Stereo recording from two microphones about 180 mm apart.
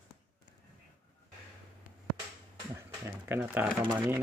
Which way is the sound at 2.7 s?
10° right (ahead or behind).